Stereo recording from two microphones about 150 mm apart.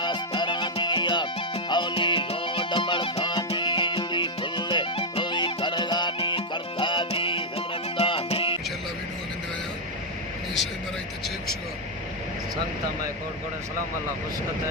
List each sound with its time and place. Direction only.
0.0 s music: 30° left (ahead or behind)